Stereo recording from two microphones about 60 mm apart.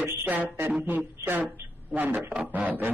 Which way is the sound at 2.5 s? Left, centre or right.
Right.